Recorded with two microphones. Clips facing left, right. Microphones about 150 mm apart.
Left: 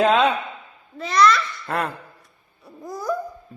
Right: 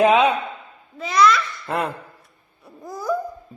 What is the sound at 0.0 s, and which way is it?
Speech, 15° right (ahead or behind).